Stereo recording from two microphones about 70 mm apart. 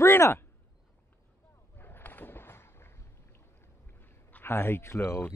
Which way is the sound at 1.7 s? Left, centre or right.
Left.